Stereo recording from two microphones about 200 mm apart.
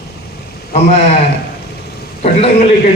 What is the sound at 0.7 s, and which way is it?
Speech, 30° left (ahead or behind).